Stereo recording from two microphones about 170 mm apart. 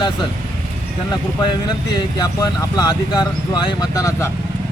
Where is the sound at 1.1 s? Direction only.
25° left (ahead or behind).